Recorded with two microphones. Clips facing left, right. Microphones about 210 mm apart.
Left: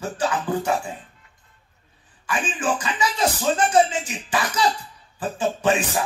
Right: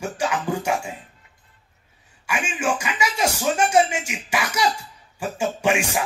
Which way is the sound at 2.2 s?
10° right (ahead or behind).